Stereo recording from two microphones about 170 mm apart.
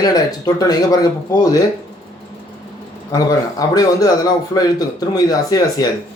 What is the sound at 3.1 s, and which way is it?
Speech, 20° left (ahead or behind).